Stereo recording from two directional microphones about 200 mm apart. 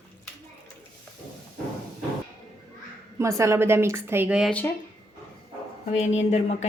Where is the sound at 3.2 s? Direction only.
15° right (ahead or behind).